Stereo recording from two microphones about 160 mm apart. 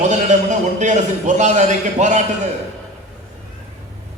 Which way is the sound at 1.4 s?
50° right (ahead or behind).